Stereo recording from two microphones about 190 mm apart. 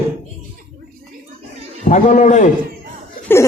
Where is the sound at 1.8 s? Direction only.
40° left (ahead or behind).